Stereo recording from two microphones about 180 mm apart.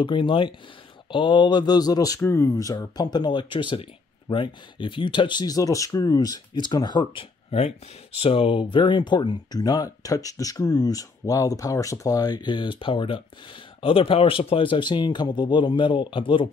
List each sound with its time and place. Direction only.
0.0 s speech: 30° left (ahead or behind)
7.2 s speech: 35° left (ahead or behind)